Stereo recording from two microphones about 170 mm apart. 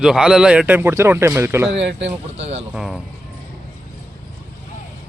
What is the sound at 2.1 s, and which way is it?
Speech, 40° right (ahead or behind).